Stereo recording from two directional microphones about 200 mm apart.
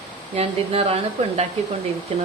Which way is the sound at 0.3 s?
30° right (ahead or behind).